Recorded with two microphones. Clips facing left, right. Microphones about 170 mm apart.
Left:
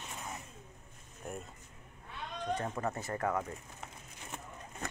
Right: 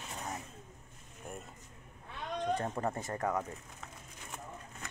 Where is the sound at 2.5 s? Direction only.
30° right (ahead or behind).